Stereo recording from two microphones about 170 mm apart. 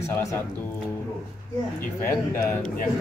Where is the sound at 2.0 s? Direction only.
10° left (ahead or behind).